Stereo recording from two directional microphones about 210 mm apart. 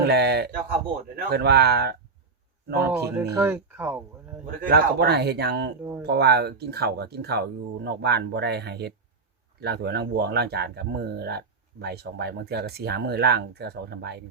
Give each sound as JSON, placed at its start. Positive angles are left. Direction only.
{"t": 0.0, "sound": "speech", "side_deg": -50}
{"t": 3.3, "sound": "speech", "side_deg": -10}
{"t": 4.6, "sound": "speech", "side_deg": -50}